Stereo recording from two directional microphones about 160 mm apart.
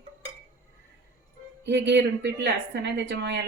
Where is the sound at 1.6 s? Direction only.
90° right.